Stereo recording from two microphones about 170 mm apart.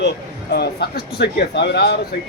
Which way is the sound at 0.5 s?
75° left (ahead or behind).